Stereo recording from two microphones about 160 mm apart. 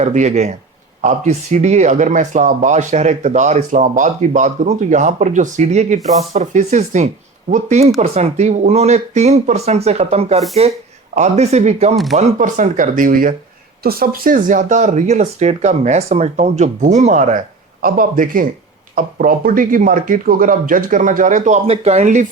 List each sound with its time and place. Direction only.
0.0 s speech: 45° right (ahead or behind)
13.8 s speech: 70° right (ahead or behind); by 17.4 s 50° right (ahead or behind)
17.8 s speech: 60° right (ahead or behind)